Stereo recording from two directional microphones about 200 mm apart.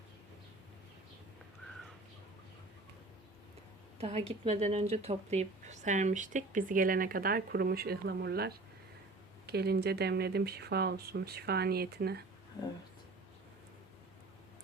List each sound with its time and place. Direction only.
3.9 s speech: 30° right (ahead or behind); by 12.2 s 55° right (ahead or behind)